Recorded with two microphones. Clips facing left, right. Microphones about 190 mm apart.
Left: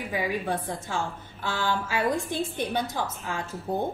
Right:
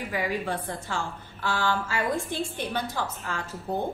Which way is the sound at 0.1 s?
15° left (ahead or behind).